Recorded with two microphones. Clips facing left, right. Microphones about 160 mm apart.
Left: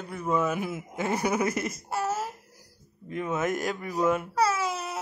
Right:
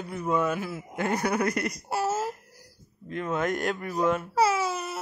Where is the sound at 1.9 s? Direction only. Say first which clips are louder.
Right 2 dB; 30° right (ahead or behind).